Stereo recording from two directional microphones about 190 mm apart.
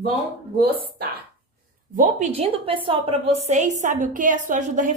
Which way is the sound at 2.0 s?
35° right (ahead or behind).